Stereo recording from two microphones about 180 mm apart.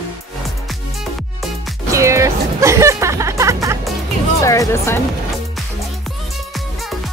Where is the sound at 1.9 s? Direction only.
15° right (ahead or behind).